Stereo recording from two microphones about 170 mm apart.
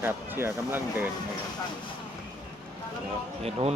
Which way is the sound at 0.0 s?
15° right (ahead or behind).